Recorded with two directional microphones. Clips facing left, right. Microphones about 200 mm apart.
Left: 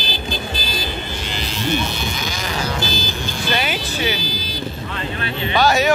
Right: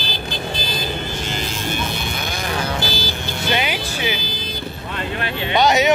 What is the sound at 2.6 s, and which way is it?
Vehicle, 55° right (ahead or behind).